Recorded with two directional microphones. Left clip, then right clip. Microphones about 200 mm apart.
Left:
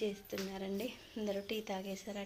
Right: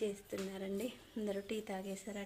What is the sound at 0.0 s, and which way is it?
Speech, 15° right (ahead or behind).